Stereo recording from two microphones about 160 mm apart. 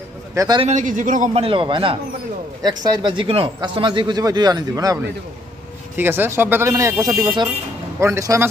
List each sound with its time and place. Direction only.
0.3 s a man's voice: 20° right (ahead or behind)
0.6 s speech: 45° right (ahead or behind)
1.4 s speech: 30° right (ahead or behind)